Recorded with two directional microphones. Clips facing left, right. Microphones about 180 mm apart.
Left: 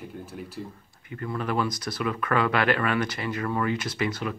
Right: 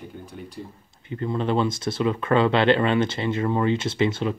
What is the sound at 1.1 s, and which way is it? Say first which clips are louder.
Speech: right 5 dB; 25° right (ahead or behind).